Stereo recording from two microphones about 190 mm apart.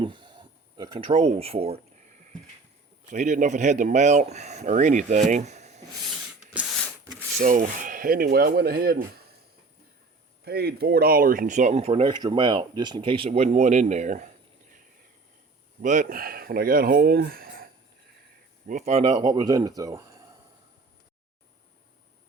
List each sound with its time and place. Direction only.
0.0 s a sound: 25° right (ahead or behind)
3.1 s speech: 40° right (ahead or behind)
6.5 s a sound: 5° right (ahead or behind)
7.3 s speech: 45° right (ahead or behind)
10.4 s speech: 55° right (ahead or behind); by 14.3 s 40° right (ahead or behind)
15.8 s speech: 45° right (ahead or behind)
18.7 s speech: 35° right (ahead or behind); by 20.2 s 20° right (ahead or behind)